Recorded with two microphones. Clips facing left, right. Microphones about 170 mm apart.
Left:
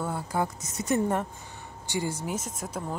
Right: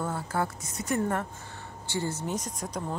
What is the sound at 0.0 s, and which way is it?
Speech, 10° left (ahead or behind).